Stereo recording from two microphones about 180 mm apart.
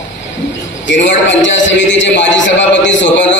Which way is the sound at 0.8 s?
85° left.